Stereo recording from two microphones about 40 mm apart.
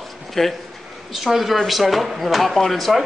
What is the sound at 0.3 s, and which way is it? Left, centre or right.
A man's voice, centre.